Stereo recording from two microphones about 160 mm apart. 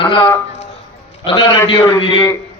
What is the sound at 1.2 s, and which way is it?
A man's voice, 35° left (ahead or behind).